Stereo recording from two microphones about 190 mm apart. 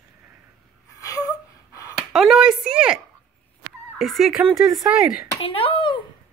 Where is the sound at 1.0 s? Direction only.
20° left (ahead or behind).